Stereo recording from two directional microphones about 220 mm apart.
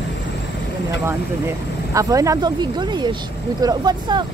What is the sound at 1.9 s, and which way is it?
Speech, 15° right (ahead or behind).